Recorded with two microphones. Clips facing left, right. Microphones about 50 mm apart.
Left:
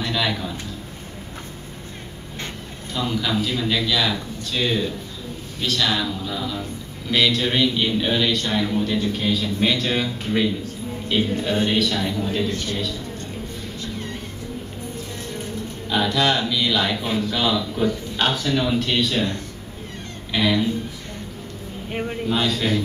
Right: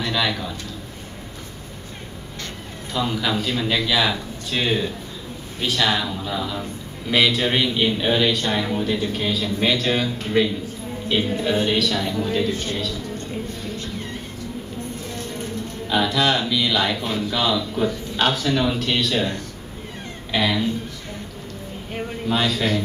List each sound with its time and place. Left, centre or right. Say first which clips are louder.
0.0 s a man's voice: right 1 dB; centre
2.9 s a man's voice: right 1 dB; centre
15.9 s speech: even; centre
20.3 s speech: left 1 dB; centre
22.3 s speech: right 1 dB; centre